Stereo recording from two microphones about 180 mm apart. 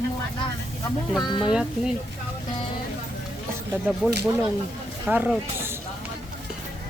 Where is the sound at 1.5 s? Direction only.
5° right (ahead or behind).